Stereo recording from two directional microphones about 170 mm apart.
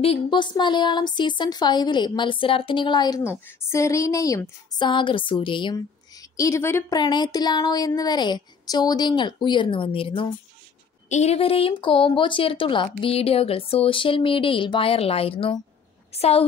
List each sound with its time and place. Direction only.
0.0 s speech: 30° left (ahead or behind); by 7.0 s 15° left (ahead or behind)
7.0 s a woman's voice: 25° left (ahead or behind)